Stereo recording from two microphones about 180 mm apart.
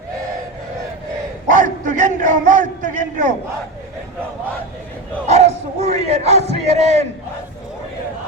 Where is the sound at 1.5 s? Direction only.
45° right (ahead or behind).